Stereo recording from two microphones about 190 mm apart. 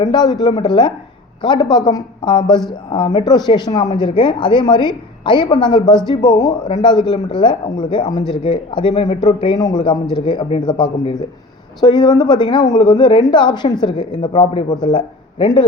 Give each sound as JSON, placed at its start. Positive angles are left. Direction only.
{"t": 0.1, "sound": "speech", "side_deg": 20}